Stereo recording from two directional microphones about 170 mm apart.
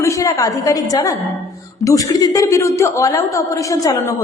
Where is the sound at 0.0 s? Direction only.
20° left (ahead or behind).